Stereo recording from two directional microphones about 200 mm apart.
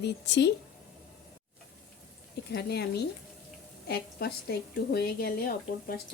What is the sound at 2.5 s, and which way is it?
Speech, 55° left (ahead or behind).